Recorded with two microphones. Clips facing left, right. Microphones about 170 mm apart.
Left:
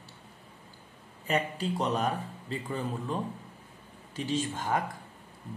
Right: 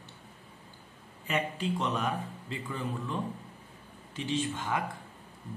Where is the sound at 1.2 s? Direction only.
35° left (ahead or behind).